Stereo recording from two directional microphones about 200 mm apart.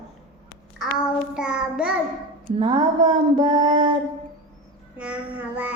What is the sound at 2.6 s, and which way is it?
Music, 25° right (ahead or behind).